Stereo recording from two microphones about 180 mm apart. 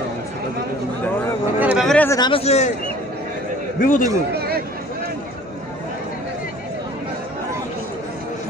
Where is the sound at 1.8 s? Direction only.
10° left (ahead or behind).